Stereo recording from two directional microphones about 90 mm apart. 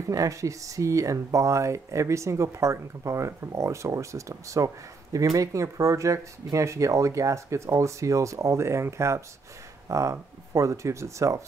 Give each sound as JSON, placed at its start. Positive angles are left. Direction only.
{"t": 0.1, "sound": "speech", "side_deg": -40}